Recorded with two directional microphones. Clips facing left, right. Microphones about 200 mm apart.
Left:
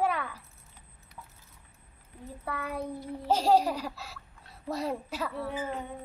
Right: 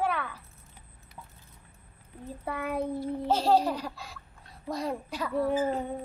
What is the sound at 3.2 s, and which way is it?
A woman's voice, 10° left (ahead or behind).